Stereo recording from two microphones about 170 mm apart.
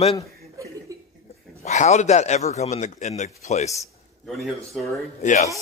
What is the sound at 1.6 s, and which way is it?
Speech, 45° left (ahead or behind).